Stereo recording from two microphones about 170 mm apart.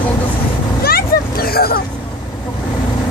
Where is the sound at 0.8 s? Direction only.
65° left (ahead or behind).